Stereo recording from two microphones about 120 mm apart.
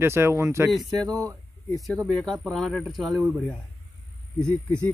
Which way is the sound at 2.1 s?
Centre (ahead or behind).